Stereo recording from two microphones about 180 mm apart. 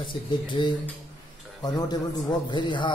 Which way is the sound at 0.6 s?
25° left (ahead or behind).